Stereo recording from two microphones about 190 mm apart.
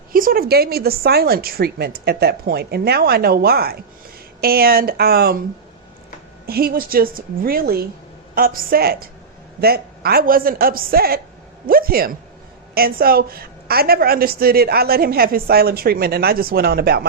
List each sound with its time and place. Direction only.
0.1 s a woman's voice: 50° right (ahead or behind)
6.4 s a woman's voice: 55° right (ahead or behind)